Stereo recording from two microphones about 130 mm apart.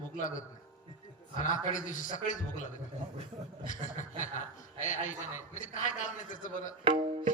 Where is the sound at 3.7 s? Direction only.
75° left (ahead or behind).